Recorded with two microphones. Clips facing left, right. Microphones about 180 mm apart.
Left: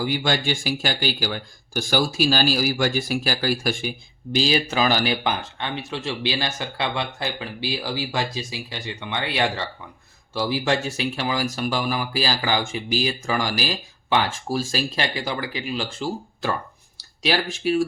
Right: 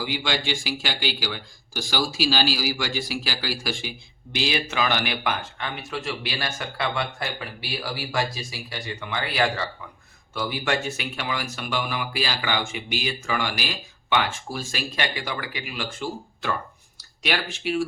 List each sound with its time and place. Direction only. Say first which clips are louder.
0.0 s speech: left 4 dB; 45° left (ahead or behind)